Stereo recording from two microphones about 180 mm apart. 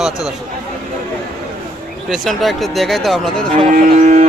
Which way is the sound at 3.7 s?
45° right (ahead or behind).